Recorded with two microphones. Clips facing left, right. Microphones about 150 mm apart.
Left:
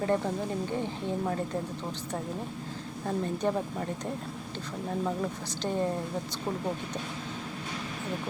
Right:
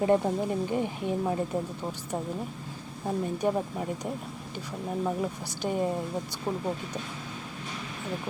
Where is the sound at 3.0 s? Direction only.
10° right (ahead or behind).